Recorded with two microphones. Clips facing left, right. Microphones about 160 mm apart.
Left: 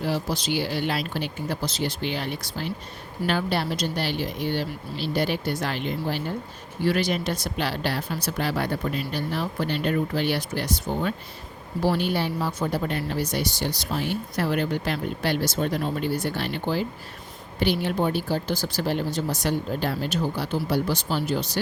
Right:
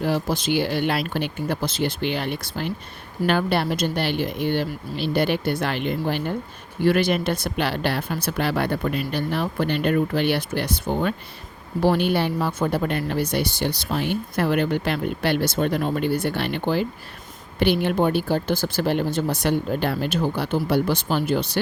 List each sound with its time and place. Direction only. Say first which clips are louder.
0.0 s speech: right 4 dB; 50° right (ahead or behind)